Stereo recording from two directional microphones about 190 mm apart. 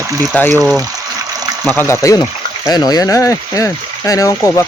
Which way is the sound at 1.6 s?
10° left (ahead or behind).